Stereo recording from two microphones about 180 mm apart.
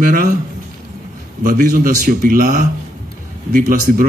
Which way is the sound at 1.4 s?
50° right (ahead or behind).